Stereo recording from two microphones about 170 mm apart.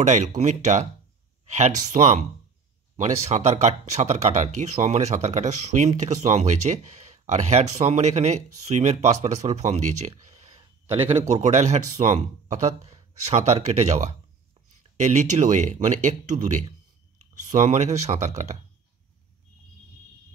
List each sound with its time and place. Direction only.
0.0 s speech: 45° right (ahead or behind)